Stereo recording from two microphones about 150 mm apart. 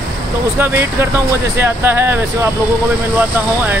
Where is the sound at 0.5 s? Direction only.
15° right (ahead or behind).